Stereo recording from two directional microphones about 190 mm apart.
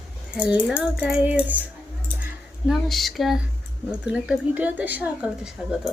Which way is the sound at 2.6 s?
Centre (ahead or behind).